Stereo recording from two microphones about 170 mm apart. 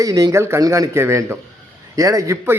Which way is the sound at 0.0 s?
20° right (ahead or behind).